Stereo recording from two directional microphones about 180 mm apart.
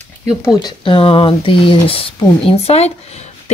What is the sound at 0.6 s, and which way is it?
A woman's voice, 25° left (ahead or behind).